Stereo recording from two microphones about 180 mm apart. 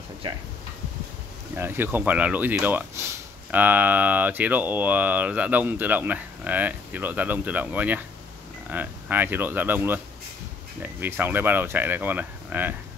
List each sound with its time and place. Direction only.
0.2 s speech: 25° right (ahead or behind)
1.6 s speech: 10° right (ahead or behind)